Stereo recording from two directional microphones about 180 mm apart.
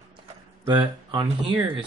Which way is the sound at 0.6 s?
25° right (ahead or behind).